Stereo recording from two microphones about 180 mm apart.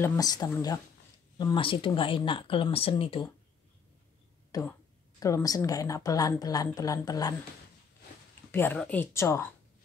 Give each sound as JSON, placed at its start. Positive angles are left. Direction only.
{"t": 0.0, "sound": "a woman's voice", "side_deg": 15}
{"t": 4.5, "sound": "a woman's voice", "side_deg": 20}
{"t": 8.5, "sound": "speech", "side_deg": 10}